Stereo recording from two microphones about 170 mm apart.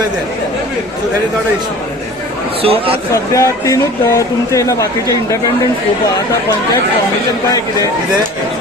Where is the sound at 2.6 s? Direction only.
35° right (ahead or behind).